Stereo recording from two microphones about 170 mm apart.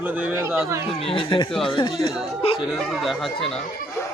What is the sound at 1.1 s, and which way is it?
Speech, 30° left (ahead or behind).